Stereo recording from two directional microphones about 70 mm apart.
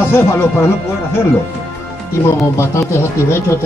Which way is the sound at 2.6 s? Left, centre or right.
Left.